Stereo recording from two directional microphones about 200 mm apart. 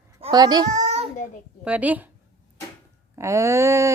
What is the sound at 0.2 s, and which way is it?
Speech, 20° right (ahead or behind).